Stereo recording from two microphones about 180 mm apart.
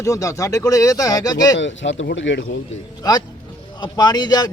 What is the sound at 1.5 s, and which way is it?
Speech, 90° left.